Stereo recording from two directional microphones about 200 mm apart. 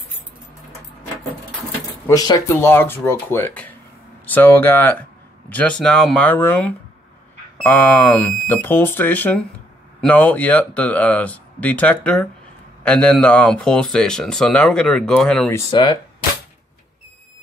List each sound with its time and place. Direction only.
2.0 s speech: 20° left (ahead or behind)
15.7 s speech: 25° left (ahead or behind)